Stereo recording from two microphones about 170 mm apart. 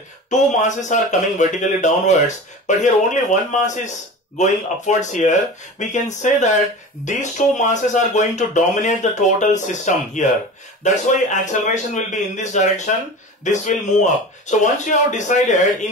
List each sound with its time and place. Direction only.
0.3 s speech: 45° left (ahead or behind)